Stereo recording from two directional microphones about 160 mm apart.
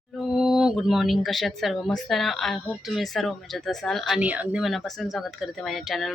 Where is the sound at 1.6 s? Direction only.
Centre (ahead or behind).